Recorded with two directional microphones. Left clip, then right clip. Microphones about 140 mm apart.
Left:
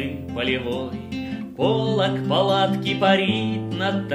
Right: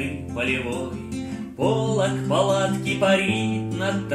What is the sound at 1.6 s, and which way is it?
Music, 25° left (ahead or behind).